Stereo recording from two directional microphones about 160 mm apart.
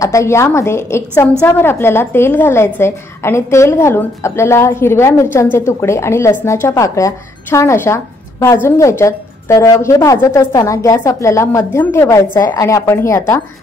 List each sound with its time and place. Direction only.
0.0 s a woman's voice: 20° left (ahead or behind)